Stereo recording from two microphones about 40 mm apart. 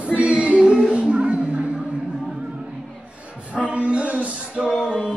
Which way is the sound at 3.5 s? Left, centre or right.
Right.